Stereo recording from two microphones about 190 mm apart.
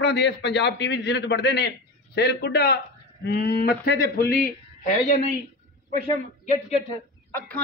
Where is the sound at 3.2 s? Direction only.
55° left (ahead or behind).